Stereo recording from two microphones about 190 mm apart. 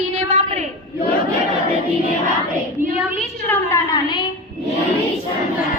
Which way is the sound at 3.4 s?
20° left (ahead or behind).